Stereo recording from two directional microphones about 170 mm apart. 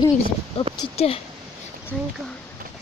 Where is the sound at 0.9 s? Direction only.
35° left (ahead or behind).